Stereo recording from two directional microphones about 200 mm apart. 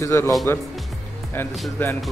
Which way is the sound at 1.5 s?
Centre (ahead or behind).